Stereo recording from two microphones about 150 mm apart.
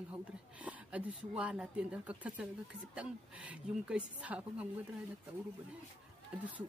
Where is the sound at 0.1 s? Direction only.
10° right (ahead or behind).